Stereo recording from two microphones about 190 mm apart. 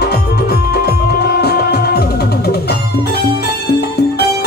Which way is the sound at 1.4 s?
60° left (ahead or behind).